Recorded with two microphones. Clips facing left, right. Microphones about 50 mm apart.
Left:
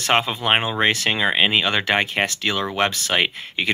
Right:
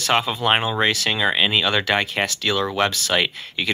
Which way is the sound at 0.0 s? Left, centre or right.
Left.